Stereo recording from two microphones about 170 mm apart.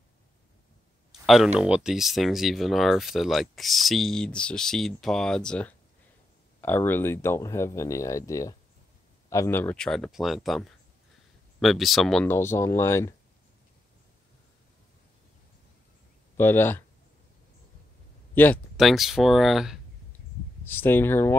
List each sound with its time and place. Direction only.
1.2 s speech: centre (ahead or behind)
12.3 s speech: 15° left (ahead or behind)
16.3 s speech: 15° left (ahead or behind)
18.3 s speech: 10° left (ahead or behind)
18.8 s speech: centre (ahead or behind)
20.6 s speech: 10° left (ahead or behind)